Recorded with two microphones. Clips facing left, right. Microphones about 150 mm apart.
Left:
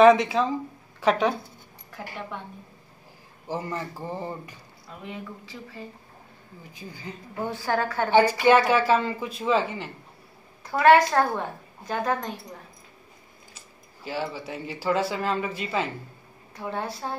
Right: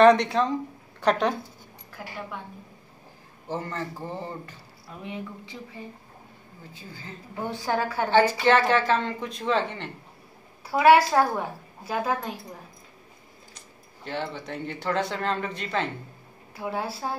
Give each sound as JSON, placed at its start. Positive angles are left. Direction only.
{"t": 0.0, "sound": "speech", "side_deg": 0}
{"t": 3.4, "sound": "a woman's voice", "side_deg": 10}
{"t": 5.0, "sound": "speech", "side_deg": -20}
{"t": 6.7, "sound": "a woman's voice", "side_deg": 15}
{"t": 7.4, "sound": "a woman's voice", "side_deg": -15}
{"t": 8.1, "sound": "a woman's voice", "side_deg": 10}
{"t": 10.6, "sound": "a woman's voice", "side_deg": -10}
{"t": 13.6, "sound": "speech", "side_deg": 5}
{"t": 16.5, "sound": "a woman's voice", "side_deg": -5}